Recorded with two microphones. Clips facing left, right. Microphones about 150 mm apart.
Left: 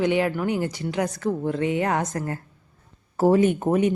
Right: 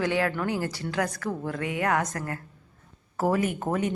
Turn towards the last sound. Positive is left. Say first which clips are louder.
# left 7 dB
turn(degrees=20)  # may be behind; listen again after turning